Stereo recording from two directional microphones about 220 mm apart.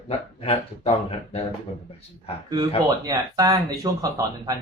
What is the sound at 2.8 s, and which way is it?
Speech, 15° right (ahead or behind).